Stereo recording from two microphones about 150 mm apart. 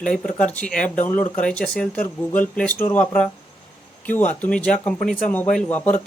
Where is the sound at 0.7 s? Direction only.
60° left (ahead or behind).